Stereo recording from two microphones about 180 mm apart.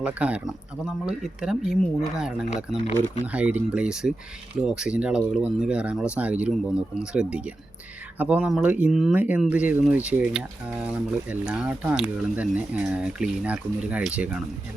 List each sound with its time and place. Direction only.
0.0 s speech: 5° right (ahead or behind)